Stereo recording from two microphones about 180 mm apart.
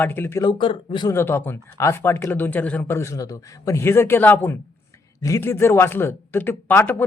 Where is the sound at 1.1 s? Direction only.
10° left (ahead or behind).